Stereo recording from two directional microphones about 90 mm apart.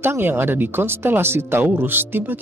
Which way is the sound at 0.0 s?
25° right (ahead or behind).